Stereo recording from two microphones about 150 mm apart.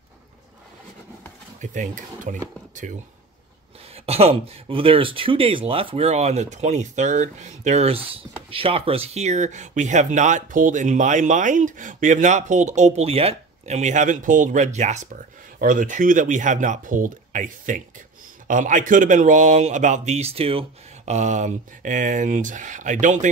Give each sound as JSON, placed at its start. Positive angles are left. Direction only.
{"t": 1.6, "sound": "speech", "side_deg": -60}
{"t": 3.9, "sound": "speech", "side_deg": -45}